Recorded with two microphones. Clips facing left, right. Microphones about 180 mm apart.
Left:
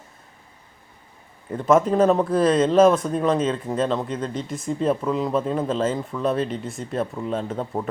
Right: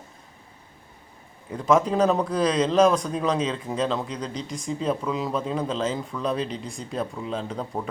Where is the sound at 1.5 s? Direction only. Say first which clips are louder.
Left 3 dB; 5° left (ahead or behind).